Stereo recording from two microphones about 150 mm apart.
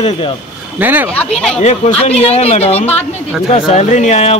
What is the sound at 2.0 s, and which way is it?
Speech, 45° left (ahead or behind).